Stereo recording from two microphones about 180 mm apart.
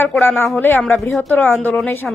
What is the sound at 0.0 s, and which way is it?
A woman's voice, 10° left (ahead or behind).